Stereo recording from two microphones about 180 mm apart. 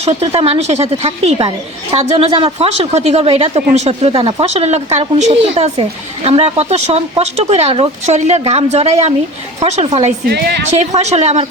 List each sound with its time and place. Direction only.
0.0 s a woman's voice: 35° right (ahead or behind)
10.2 s a woman's voice: 60° right (ahead or behind)
10.8 s a woman's voice: 40° right (ahead or behind)